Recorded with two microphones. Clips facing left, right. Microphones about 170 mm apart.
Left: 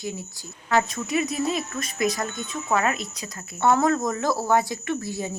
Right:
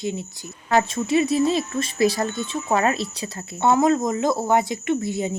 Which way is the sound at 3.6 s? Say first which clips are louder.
Right 2 dB; 20° right (ahead or behind).